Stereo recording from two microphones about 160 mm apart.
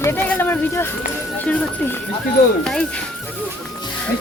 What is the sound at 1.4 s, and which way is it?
A woman's voice, 10° left (ahead or behind).